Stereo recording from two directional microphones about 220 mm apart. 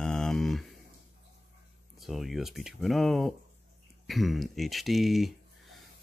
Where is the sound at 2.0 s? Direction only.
Centre (ahead or behind).